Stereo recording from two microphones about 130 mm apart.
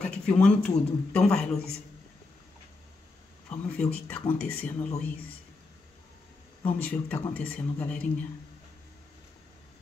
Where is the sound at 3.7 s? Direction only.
10° left (ahead or behind).